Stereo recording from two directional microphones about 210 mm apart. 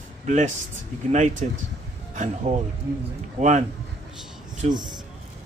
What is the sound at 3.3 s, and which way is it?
Speech, 35° right (ahead or behind).